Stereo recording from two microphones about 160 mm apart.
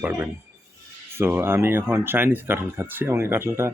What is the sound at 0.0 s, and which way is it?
Speech, 15° right (ahead or behind).